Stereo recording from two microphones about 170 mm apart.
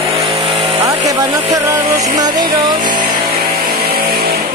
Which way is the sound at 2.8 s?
50° right (ahead or behind).